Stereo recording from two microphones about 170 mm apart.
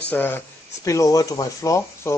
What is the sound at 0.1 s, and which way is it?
Speech, 10° left (ahead or behind).